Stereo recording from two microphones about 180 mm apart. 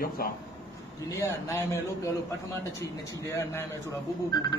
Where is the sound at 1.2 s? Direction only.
15° left (ahead or behind).